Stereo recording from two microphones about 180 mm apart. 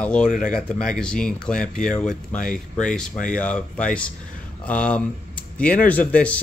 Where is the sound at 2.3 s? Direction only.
45° left (ahead or behind).